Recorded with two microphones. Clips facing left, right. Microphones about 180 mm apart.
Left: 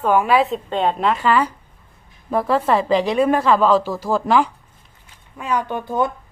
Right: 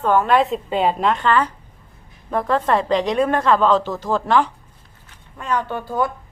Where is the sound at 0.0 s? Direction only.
10° left (ahead or behind).